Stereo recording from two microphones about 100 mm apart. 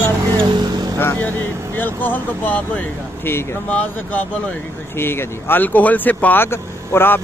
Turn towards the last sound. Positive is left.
turn(degrees=20)  # may be behind; listen again after turning